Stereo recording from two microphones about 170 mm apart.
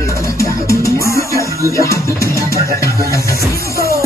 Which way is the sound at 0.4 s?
20° left (ahead or behind).